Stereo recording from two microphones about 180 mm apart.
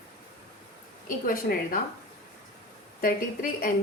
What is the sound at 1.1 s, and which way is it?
Speech, 50° left (ahead or behind).